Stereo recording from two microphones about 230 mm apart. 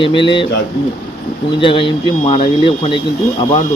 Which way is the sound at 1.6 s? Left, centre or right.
Left.